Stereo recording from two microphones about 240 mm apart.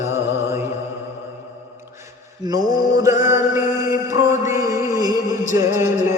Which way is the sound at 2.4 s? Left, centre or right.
Centre.